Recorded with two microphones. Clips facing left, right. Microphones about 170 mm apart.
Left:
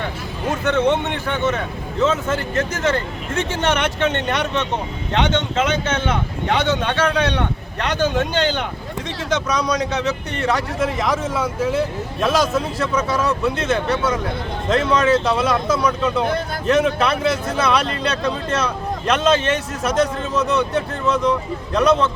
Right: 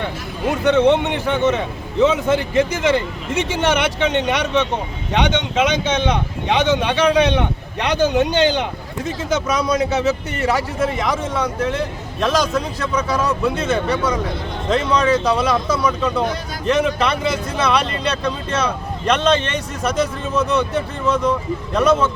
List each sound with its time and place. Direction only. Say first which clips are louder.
0.6 s a man's voice: right 4 dB; 15° right (ahead or behind)
9.0 s speech: right 2 dB; 5° right (ahead or behind)